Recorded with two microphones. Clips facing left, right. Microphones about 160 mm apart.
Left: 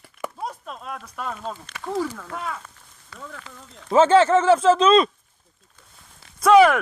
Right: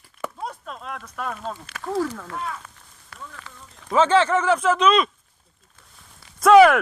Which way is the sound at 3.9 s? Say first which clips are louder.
Left 3 dB; 30° left (ahead or behind).